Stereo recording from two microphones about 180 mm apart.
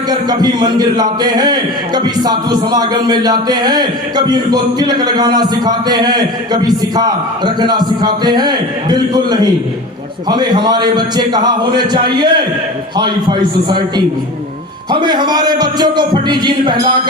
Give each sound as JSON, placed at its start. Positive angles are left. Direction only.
{"t": 0.1, "sound": "speech", "side_deg": -25}